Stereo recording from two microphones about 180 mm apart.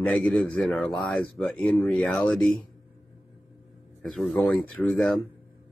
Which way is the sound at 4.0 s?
Centre (ahead or behind).